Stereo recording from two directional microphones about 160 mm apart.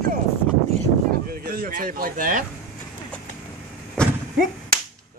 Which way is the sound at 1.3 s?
65° right (ahead or behind).